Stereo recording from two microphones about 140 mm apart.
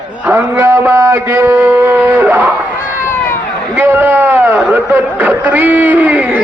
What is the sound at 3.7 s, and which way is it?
A man's voice, 15° right (ahead or behind).